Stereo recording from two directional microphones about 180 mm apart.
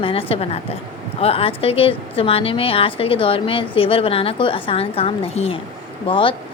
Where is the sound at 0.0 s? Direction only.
30° left (ahead or behind).